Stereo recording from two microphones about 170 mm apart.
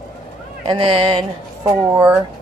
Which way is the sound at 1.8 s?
15° right (ahead or behind).